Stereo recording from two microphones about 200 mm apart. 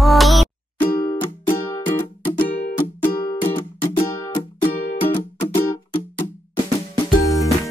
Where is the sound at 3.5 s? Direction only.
25° left (ahead or behind).